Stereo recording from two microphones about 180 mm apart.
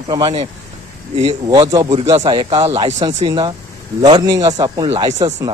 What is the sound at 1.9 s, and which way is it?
Speech, 35° right (ahead or behind).